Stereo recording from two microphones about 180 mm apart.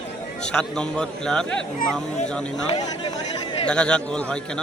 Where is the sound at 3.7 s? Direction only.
5° left (ahead or behind).